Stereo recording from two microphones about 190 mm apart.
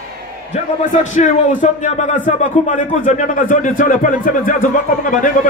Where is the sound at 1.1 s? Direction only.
40° left (ahead or behind).